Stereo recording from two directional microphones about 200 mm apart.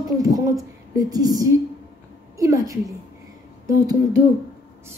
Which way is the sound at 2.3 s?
15° right (ahead or behind).